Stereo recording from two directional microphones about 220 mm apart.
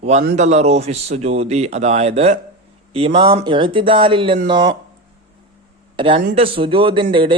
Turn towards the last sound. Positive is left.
turn(degrees=-20)  # may be behind; listen again after turning